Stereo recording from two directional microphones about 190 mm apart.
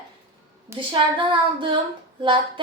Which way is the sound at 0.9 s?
25° right (ahead or behind).